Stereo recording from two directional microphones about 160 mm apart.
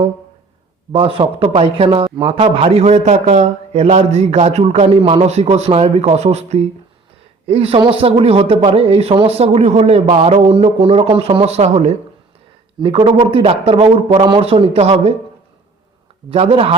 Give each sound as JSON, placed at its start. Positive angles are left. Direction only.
{"t": 0.9, "sound": "a man's voice", "side_deg": -35}
{"t": 12.8, "sound": "a man's voice", "side_deg": -35}
{"t": 16.3, "sound": "a man's voice", "side_deg": -35}